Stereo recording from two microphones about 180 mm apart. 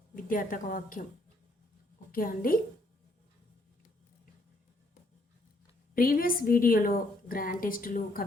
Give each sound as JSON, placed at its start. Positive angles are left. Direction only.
{"t": 0.2, "sound": "a woman's voice", "side_deg": 50}
{"t": 2.1, "sound": "a woman's voice", "side_deg": 50}
{"t": 5.9, "sound": "a woman's voice", "side_deg": 55}